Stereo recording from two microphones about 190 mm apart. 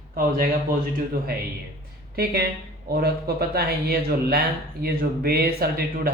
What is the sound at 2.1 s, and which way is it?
Speech, 55° right (ahead or behind).